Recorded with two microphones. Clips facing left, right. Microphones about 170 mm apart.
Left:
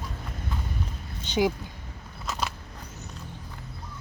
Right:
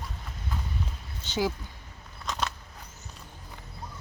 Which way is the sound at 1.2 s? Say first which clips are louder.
Left 4 dB; 15° left (ahead or behind).